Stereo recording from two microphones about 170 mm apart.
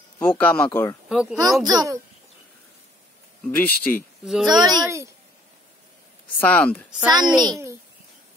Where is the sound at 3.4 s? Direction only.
10° left (ahead or behind).